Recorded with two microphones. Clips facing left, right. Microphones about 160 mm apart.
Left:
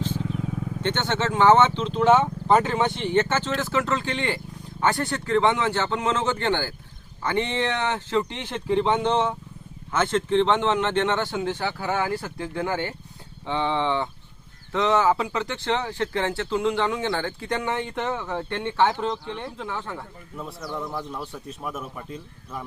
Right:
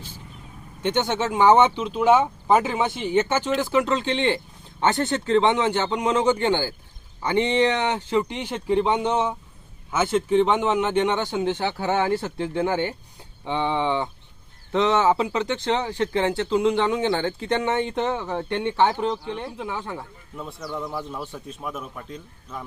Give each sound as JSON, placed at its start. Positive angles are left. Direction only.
{"t": 0.8, "sound": "speech", "side_deg": -10}
{"t": 20.3, "sound": "speech", "side_deg": 0}